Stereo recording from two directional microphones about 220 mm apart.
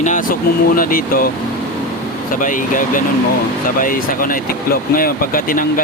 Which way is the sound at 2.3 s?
35° left (ahead or behind).